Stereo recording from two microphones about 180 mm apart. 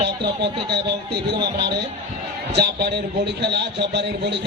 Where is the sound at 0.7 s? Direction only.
70° right (ahead or behind).